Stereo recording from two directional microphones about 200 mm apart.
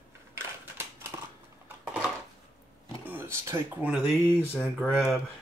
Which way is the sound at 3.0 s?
10° right (ahead or behind).